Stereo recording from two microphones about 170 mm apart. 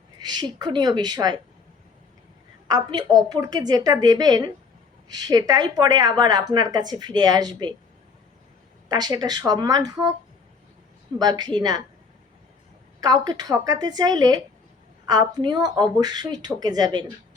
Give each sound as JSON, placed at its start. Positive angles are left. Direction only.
{"t": 0.2, "sound": "a woman's voice", "side_deg": -25}
{"t": 2.6, "sound": "a woman's voice", "side_deg": -25}
{"t": 8.9, "sound": "a woman's voice", "side_deg": -25}
{"t": 11.2, "sound": "a woman's voice", "side_deg": -25}
{"t": 13.0, "sound": "a woman's voice", "side_deg": -25}